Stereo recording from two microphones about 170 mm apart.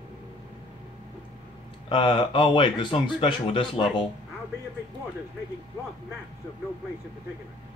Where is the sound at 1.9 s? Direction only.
30° left (ahead or behind).